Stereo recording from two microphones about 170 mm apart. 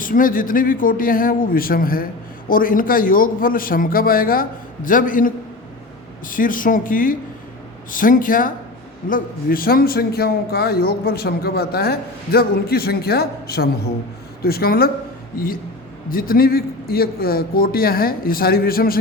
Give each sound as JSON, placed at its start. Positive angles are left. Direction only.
{"t": 0.0, "sound": "a man's voice", "side_deg": 55}